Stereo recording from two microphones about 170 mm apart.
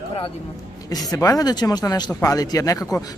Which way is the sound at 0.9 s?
20° left (ahead or behind).